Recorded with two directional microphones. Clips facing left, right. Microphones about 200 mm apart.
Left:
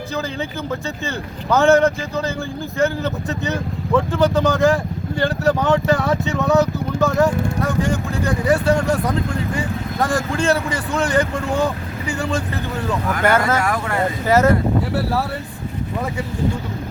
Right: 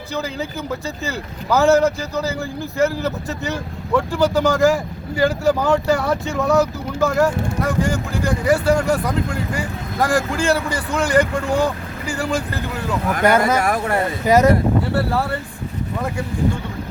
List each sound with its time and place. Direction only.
0.2 s speech: 5° right (ahead or behind)
10.0 s speech: centre (ahead or behind)
13.2 s speech: 15° right (ahead or behind)
13.6 s speech: 40° right (ahead or behind)
14.3 s speech: 15° right (ahead or behind)
14.9 s speech: 5° left (ahead or behind)